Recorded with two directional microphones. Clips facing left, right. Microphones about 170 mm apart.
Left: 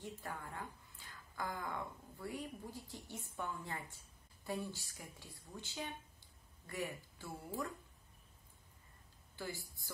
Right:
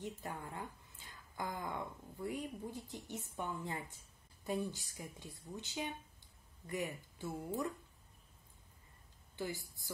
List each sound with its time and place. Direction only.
0.0 s speech: 20° right (ahead or behind)
9.4 s speech: 20° right (ahead or behind)